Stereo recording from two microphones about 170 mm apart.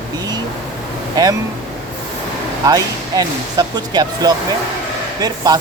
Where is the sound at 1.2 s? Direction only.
25° right (ahead or behind).